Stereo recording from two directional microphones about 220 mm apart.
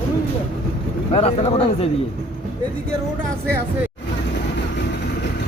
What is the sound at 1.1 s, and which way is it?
Speech, 25° left (ahead or behind).